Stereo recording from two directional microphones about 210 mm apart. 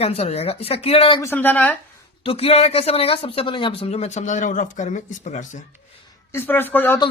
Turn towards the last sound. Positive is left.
turn(degrees=10)  # may be behind; listen again after turning